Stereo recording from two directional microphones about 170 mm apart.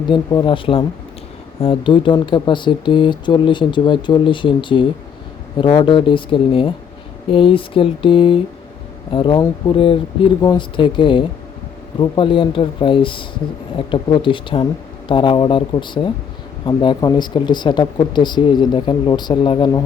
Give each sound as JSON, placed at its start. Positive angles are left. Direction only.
{"t": 0.1, "sound": "speech", "side_deg": 25}
{"t": 7.3, "sound": "a sound", "side_deg": 30}
{"t": 9.1, "sound": "speech", "side_deg": 30}